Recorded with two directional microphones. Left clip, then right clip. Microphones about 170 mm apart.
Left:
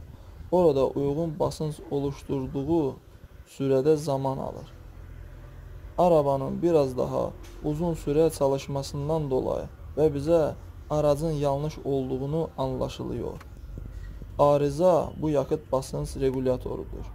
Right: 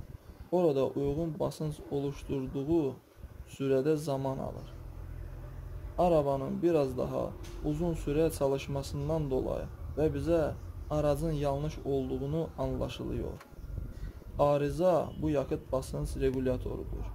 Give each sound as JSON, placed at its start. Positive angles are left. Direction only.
{"t": 0.5, "sound": "speech", "side_deg": 25}
{"t": 5.9, "sound": "speech", "side_deg": 25}
{"t": 14.3, "sound": "speech", "side_deg": 25}